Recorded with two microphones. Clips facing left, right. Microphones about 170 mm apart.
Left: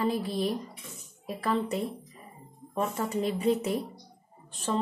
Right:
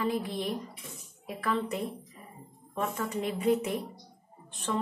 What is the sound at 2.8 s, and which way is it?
Speech, 35° left (ahead or behind).